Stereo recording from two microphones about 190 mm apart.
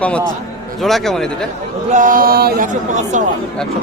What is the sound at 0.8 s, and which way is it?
Speech, centre (ahead or behind).